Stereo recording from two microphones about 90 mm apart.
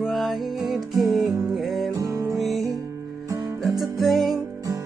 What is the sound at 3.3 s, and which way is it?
Music, 40° right (ahead or behind).